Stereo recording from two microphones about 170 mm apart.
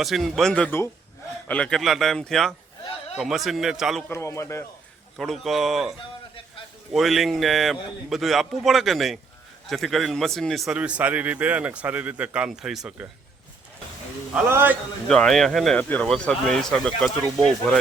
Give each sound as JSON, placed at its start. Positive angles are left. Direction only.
{"t": 0.0, "sound": "speech", "side_deg": 0}
{"t": 4.1, "sound": "a man's voice", "side_deg": 15}
{"t": 5.1, "sound": "speech", "side_deg": 0}
{"t": 6.9, "sound": "a man's voice", "side_deg": 0}
{"t": 14.3, "sound": "a man's voice", "side_deg": -15}
{"t": 15.0, "sound": "speech", "side_deg": 5}